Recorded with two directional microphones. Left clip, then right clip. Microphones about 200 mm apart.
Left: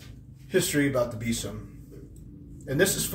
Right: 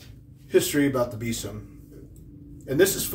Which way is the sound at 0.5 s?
15° right (ahead or behind).